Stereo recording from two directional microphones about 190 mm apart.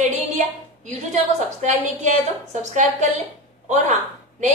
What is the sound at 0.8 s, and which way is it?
A woman's voice, 40° right (ahead or behind).